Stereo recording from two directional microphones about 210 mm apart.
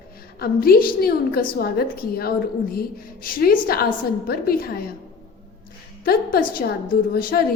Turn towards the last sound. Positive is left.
turn(degrees=45)  # may be behind; listen again after turning